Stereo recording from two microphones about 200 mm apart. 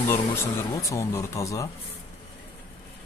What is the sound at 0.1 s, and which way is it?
Speech, 15° left (ahead or behind).